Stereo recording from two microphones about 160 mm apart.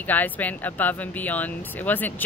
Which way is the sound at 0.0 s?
10° left (ahead or behind).